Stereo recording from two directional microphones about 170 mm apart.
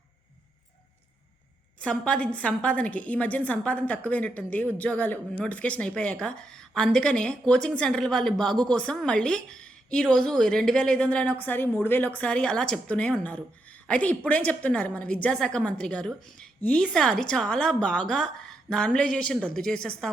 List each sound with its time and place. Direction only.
1.8 s a woman's voice: 5° left (ahead or behind)